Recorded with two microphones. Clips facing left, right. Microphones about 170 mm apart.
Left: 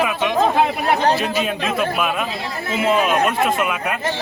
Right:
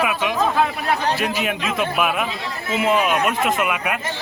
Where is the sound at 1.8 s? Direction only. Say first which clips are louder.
Right 2 dB; 15° right (ahead or behind).